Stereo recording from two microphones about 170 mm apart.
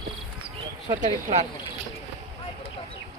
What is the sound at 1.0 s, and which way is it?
Speech, 40° right (ahead or behind).